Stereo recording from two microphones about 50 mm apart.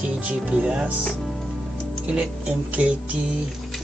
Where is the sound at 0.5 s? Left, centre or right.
Right.